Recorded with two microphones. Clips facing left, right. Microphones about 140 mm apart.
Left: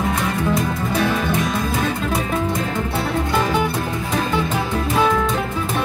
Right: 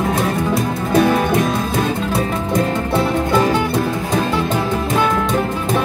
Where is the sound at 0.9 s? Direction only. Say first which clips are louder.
Right 8 dB; 55° right (ahead or behind).